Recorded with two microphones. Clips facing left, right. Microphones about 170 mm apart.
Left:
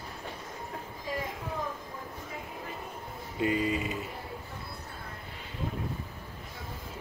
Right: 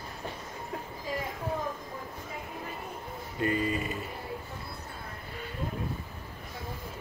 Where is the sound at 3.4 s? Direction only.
15° left (ahead or behind).